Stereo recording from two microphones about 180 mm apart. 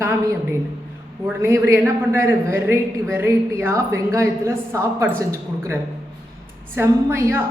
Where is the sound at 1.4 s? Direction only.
15° right (ahead or behind).